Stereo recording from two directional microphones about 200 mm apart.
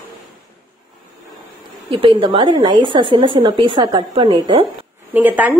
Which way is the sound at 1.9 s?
25° right (ahead or behind).